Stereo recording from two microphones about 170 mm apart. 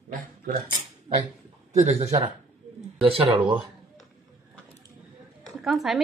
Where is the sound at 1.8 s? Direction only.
40° right (ahead or behind).